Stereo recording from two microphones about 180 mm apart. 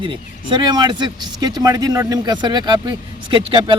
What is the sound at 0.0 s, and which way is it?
A man's voice, 25° right (ahead or behind).